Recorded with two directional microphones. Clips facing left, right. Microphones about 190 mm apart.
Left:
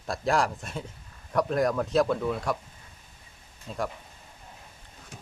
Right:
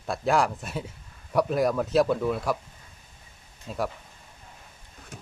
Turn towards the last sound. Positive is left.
turn(degrees=-10)  # may be behind; listen again after turning